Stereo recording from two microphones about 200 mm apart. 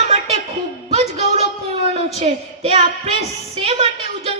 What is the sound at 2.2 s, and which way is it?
A woman's voice, 25° right (ahead or behind).